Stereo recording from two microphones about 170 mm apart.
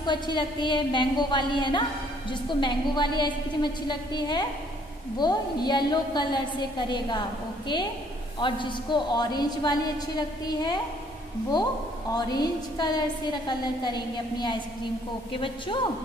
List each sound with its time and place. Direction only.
0.0 s a woman's voice: 25° left (ahead or behind)
12.1 s a woman's voice: 25° left (ahead or behind)